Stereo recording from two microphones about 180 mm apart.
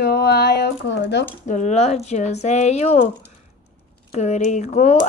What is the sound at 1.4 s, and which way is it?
Speech, 45° left (ahead or behind).